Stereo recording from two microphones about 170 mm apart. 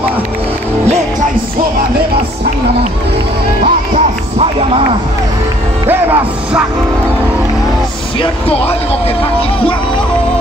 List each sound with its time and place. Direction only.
3.6 s music: 40° right (ahead or behind)
5.9 s speech: 10° right (ahead or behind)
8.2 s speech: 35° left (ahead or behind)